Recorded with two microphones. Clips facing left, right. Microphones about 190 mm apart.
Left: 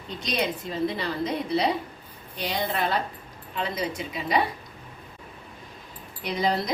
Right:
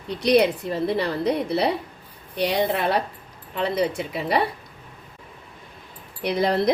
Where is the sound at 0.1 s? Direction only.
70° right (ahead or behind).